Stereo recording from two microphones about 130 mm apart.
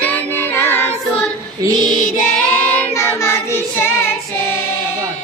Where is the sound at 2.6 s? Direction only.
15° left (ahead or behind).